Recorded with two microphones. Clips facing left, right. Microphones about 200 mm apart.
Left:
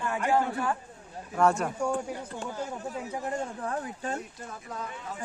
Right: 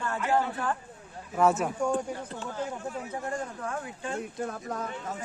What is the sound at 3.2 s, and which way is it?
Speech, 25° left (ahead or behind).